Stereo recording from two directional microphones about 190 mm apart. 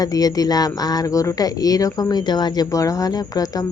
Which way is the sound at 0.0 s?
20° left (ahead or behind).